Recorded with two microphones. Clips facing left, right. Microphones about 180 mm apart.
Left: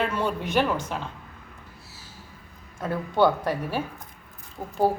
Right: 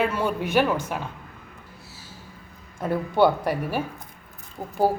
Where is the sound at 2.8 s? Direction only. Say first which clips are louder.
Right 2 dB; 10° right (ahead or behind).